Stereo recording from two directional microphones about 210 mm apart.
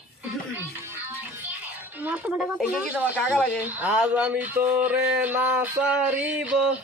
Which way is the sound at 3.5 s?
5° right (ahead or behind).